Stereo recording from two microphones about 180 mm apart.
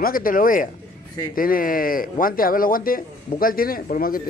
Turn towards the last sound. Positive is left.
turn(degrees=55)  # may be behind; listen again after turning